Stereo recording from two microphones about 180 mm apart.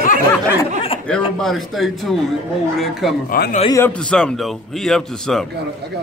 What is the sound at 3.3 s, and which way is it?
Speech, 55° left (ahead or behind).